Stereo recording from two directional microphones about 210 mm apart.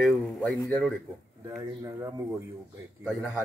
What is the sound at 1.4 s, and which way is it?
Speech, 15° right (ahead or behind).